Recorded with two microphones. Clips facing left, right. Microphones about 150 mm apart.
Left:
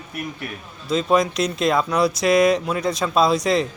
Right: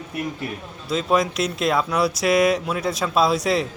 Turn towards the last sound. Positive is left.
turn(degrees=-5)  # may be behind; listen again after turning